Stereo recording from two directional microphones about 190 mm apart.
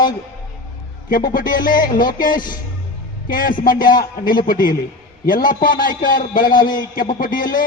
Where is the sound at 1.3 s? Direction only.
45° left (ahead or behind).